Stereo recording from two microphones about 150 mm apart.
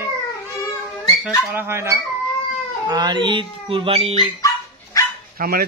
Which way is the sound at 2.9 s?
30° right (ahead or behind).